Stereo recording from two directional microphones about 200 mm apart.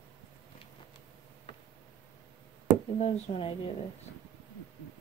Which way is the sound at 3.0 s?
30° left (ahead or behind).